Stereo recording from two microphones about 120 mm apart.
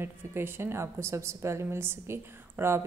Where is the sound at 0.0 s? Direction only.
20° right (ahead or behind).